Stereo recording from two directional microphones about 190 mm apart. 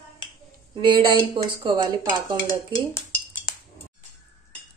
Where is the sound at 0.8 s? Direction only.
25° right (ahead or behind).